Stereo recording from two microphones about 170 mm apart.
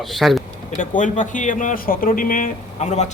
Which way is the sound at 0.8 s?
50° left (ahead or behind).